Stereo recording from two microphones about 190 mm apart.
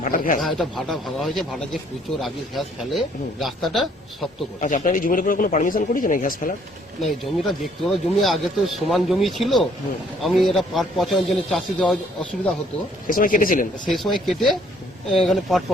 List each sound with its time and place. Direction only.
0.0 s speech: 45° left (ahead or behind)
0.4 s a man's voice: centre (ahead or behind)
4.6 s speech: 40° left (ahead or behind)
7.0 s a man's voice: centre (ahead or behind)
13.1 s speech: 45° left (ahead or behind)
13.8 s a man's voice: centre (ahead or behind)